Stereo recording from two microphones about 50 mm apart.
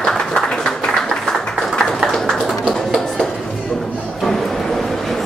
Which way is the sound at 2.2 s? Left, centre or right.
Left.